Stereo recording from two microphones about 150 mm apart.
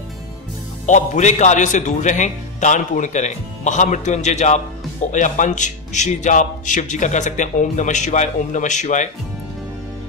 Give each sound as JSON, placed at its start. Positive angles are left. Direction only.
{"t": 0.8, "sound": "a man's voice", "side_deg": 55}